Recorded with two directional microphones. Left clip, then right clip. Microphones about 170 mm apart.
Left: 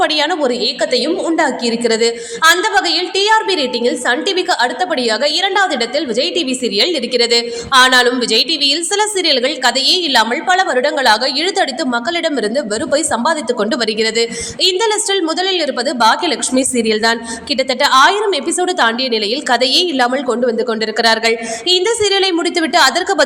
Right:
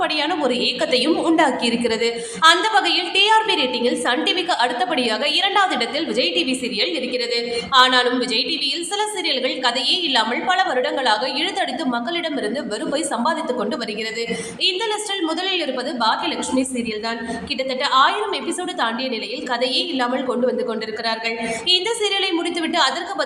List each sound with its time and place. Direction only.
0.0 s a woman's voice: 30° left (ahead or behind)
0.4 s a woman's voice: 20° left (ahead or behind); by 21.3 s 50° left (ahead or behind)
21.7 s a woman's voice: 30° left (ahead or behind)